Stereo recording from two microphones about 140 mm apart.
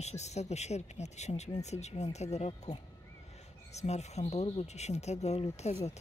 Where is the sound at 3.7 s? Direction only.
50° left (ahead or behind).